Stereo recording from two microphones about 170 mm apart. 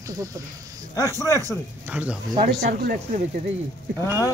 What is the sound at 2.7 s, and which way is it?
Speech, 55° right (ahead or behind).